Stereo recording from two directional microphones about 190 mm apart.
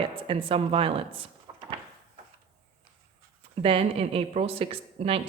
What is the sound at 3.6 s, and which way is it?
Speech, 30° right (ahead or behind).